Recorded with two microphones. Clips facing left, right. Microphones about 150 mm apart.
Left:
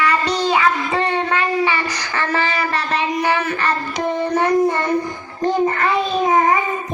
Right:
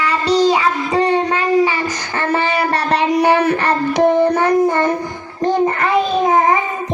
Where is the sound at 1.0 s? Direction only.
40° right (ahead or behind).